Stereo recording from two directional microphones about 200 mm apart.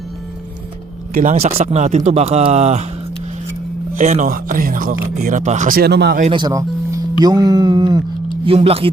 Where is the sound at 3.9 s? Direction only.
35° right (ahead or behind); by 6.2 s 55° right (ahead or behind).